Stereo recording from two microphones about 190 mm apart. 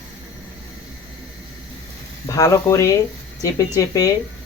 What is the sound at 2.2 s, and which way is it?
Speech, 15° left (ahead or behind).